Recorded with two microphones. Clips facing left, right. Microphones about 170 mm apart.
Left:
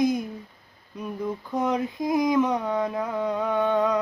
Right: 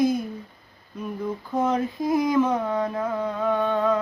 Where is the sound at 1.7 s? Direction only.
15° left (ahead or behind).